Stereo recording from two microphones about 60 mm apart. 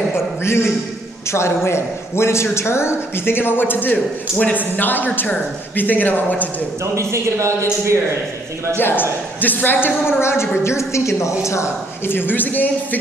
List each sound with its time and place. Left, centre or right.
0.1 s a man's voice: left
6.8 s a man's voice: right
8.7 s a woman's voice: left
12.1 s a man's voice: left